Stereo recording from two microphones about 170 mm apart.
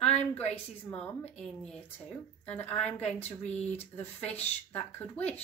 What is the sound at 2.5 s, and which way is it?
A woman's voice, 10° left (ahead or behind).